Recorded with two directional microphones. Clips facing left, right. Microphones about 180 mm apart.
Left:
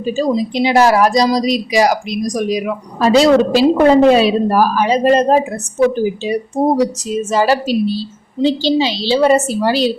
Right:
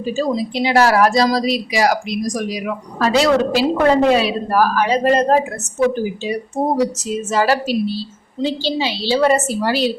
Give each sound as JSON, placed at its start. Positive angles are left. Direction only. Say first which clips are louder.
{"t": 0.2, "sound": "speech", "louder": "left 4 dB", "side_deg": 20}
{"t": 6.6, "sound": "speech", "louder": "left 3 dB", "side_deg": 15}